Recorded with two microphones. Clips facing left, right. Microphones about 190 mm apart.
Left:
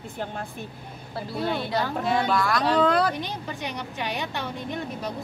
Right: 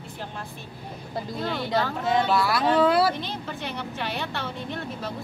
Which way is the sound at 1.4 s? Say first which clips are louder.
Left 3 dB; 20° left (ahead or behind).